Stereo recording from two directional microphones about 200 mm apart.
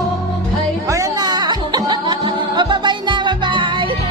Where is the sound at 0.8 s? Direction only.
15° right (ahead or behind).